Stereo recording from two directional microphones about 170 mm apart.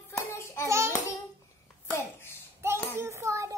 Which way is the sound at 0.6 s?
15° right (ahead or behind).